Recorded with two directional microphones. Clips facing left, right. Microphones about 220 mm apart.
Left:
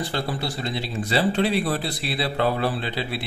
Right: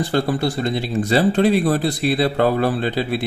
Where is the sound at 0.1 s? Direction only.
50° right (ahead or behind).